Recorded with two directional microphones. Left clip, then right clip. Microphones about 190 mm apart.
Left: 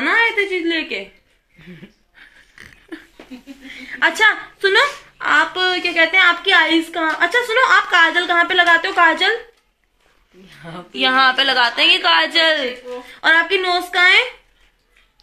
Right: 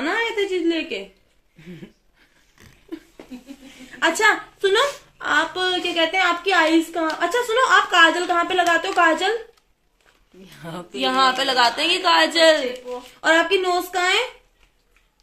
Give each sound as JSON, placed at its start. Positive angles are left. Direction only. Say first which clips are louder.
{"t": 0.0, "sound": "a sound", "louder": "left 6 dB", "side_deg": 0}
{"t": 3.8, "sound": "a woman's voice", "louder": "left 4 dB", "side_deg": 5}
{"t": 10.4, "sound": "speech", "louder": "even", "side_deg": -65}
{"t": 11.0, "sound": "a woman's voice", "louder": "left 5 dB", "side_deg": 5}